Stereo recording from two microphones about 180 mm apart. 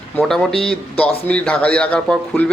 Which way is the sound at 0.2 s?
5° left (ahead or behind).